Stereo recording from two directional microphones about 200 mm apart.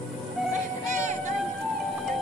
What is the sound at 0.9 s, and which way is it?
Music, 35° right (ahead or behind).